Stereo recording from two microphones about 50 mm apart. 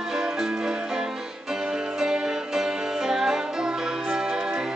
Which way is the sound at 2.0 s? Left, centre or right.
Centre.